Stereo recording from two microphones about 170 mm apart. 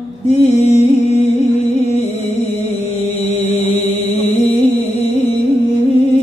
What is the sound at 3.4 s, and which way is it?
Chant, 40° left (ahead or behind).